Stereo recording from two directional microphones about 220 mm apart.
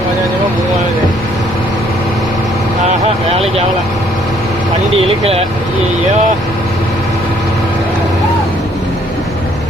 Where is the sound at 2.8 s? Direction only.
25° right (ahead or behind).